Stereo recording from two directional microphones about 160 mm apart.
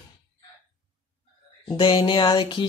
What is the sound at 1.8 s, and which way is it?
Speech, 30° left (ahead or behind).